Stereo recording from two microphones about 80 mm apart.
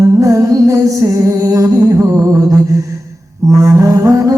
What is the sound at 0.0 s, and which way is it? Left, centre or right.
Music, right.